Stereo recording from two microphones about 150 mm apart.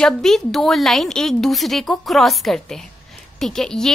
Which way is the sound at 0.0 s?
Centre (ahead or behind).